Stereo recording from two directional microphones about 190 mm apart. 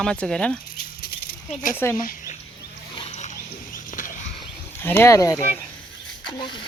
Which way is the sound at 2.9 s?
35° left (ahead or behind).